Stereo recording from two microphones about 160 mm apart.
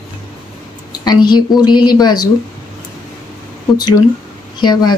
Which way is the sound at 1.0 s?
25° left (ahead or behind).